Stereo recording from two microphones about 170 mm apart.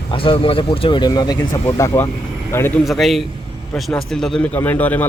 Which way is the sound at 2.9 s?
Centre (ahead or behind).